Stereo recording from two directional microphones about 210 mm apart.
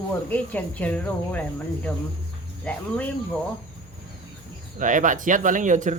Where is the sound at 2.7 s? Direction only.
5° left (ahead or behind).